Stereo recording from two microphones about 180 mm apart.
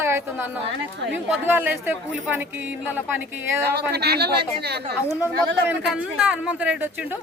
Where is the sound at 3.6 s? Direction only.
65° right (ahead or behind).